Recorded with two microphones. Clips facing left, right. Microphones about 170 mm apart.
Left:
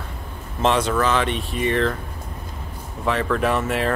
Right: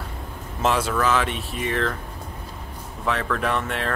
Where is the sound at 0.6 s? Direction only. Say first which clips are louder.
Left 3 dB; 5° right (ahead or behind).